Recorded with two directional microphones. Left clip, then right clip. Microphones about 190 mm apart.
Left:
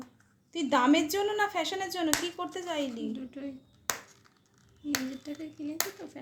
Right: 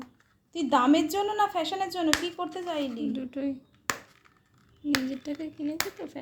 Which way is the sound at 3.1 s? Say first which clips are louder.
Right 7 dB; 50° right (ahead or behind).